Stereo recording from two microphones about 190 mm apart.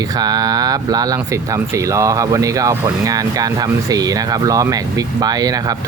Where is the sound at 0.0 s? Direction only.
20° right (ahead or behind).